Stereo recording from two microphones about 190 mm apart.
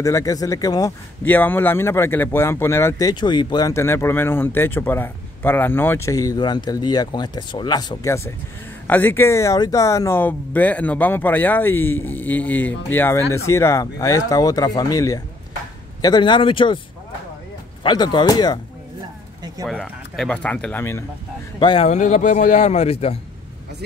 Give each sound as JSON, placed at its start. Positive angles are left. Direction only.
{"t": 0.0, "sound": "speech", "side_deg": 15}
{"t": 17.8, "sound": "speech", "side_deg": 25}
{"t": 19.7, "sound": "speech", "side_deg": 5}
{"t": 21.5, "sound": "speech", "side_deg": 25}
{"t": 21.8, "sound": "speech", "side_deg": 40}